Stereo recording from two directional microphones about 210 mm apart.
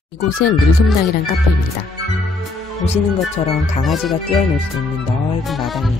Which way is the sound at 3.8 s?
Centre (ahead or behind).